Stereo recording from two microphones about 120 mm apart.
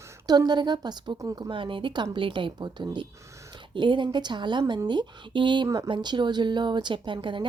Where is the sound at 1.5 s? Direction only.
45° right (ahead or behind).